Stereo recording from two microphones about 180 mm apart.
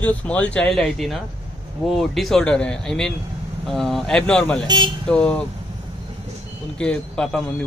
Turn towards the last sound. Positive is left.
turn(degrees=5)  # may be behind; listen again after turning